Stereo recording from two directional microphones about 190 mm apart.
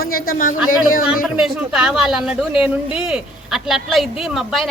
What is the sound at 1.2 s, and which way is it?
Speech, 5° right (ahead or behind).